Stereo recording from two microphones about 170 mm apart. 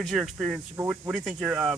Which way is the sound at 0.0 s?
Centre (ahead or behind).